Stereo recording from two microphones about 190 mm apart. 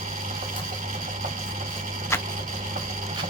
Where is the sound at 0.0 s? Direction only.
40° right (ahead or behind).